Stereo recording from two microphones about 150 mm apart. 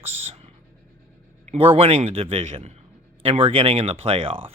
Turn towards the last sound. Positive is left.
turn(degrees=-35)  # may be behind; listen again after turning